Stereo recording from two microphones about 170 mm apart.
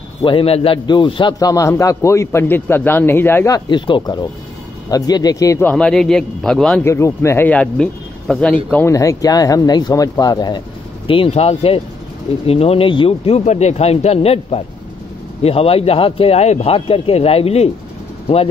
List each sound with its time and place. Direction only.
0.2 s a man's voice: 30° left (ahead or behind)
5.7 s a man's voice: 5° left (ahead or behind)
6.8 s speech: 15° left (ahead or behind)
8.7 s a man's voice: 15° left (ahead or behind); by 17.6 s 35° left (ahead or behind)